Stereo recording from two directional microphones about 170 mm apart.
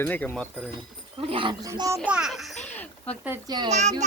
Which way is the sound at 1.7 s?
20° right (ahead or behind).